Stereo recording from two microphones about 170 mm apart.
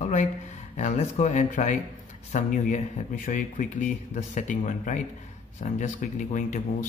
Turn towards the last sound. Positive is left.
turn(degrees=50)  # may be behind; listen again after turning